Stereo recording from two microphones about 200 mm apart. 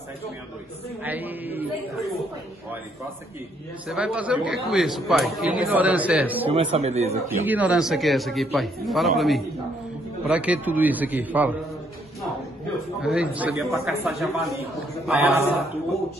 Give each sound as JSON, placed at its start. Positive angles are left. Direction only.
{"t": 1.0, "sound": "a man's voice", "side_deg": -10}
{"t": 3.8, "sound": "a man's voice", "side_deg": -5}
{"t": 6.4, "sound": "speech", "side_deg": -30}
{"t": 7.2, "sound": "a man's voice", "side_deg": -10}
{"t": 13.0, "sound": "a man's voice", "side_deg": -5}